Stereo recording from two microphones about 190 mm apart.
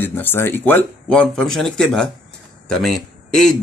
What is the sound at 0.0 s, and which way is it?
Speech, 10° left (ahead or behind).